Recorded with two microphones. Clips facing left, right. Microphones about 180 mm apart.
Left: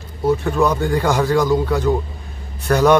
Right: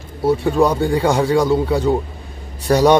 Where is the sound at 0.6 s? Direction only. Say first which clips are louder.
Right 2 dB; 30° right (ahead or behind).